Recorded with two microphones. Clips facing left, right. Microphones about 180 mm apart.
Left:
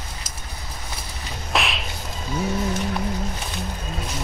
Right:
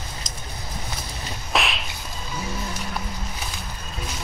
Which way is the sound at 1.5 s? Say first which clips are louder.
Even; centre (ahead or behind).